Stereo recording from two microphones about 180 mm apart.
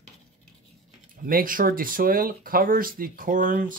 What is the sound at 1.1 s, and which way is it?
Speech, 50° right (ahead or behind).